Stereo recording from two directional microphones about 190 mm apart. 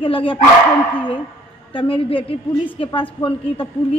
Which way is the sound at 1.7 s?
25° left (ahead or behind).